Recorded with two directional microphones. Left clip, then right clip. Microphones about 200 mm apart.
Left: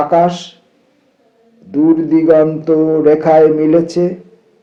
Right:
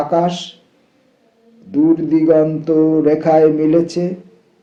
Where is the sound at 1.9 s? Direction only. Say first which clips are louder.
Left 4 dB; 35° left (ahead or behind).